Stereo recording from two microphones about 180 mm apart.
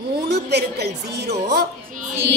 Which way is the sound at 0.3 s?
65° right (ahead or behind).